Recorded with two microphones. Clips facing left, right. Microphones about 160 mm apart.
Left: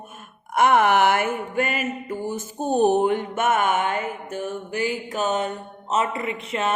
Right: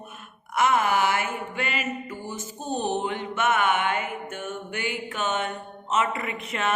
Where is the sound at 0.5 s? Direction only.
55° left (ahead or behind).